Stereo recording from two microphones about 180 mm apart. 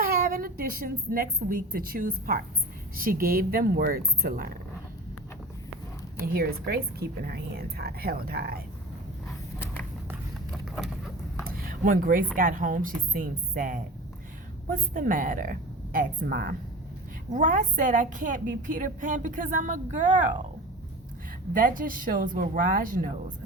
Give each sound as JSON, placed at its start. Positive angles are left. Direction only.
{"t": 0.0, "sound": "a woman's voice", "side_deg": -55}
{"t": 6.2, "sound": "a woman's voice", "side_deg": -60}
{"t": 10.5, "sound": "a sound", "side_deg": 0}
{"t": 11.4, "sound": "a sound", "side_deg": -50}
{"t": 12.4, "sound": "a woman's voice", "side_deg": -50}
{"t": 21.5, "sound": "a woman's voice", "side_deg": -50}